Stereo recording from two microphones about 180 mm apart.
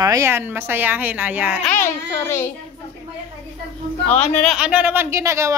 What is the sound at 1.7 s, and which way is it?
Speech, 15° left (ahead or behind).